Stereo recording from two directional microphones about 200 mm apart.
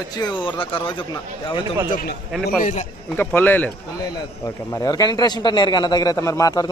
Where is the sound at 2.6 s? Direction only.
35° left (ahead or behind).